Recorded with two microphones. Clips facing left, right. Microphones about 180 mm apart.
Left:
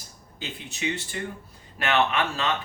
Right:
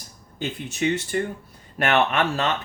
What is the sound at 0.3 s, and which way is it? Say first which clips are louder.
Speech: right 8 dB; 50° right (ahead or behind).